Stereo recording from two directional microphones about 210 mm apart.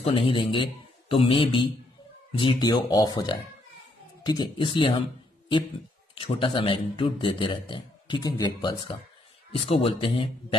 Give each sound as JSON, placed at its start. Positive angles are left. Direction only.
{"t": 0.0, "sound": "a man's voice", "side_deg": 25}
{"t": 6.1, "sound": "a man's voice", "side_deg": 25}